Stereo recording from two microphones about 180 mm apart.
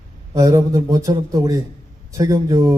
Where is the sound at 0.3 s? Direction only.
20° right (ahead or behind).